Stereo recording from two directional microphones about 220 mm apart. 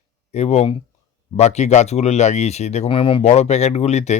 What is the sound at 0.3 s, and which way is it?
Speech, 30° left (ahead or behind).